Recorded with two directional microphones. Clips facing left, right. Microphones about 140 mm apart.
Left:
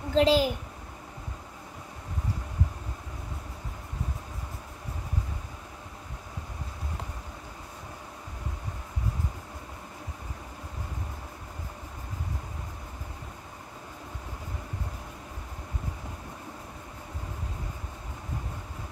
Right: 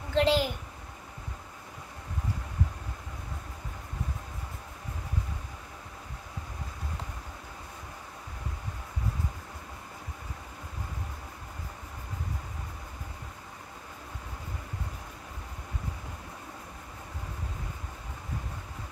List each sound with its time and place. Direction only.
0.1 s a child's voice: 35° left (ahead or behind)